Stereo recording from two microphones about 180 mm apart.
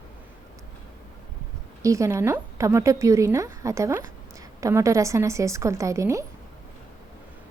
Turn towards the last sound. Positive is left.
turn(degrees=-15)  # may be behind; listen again after turning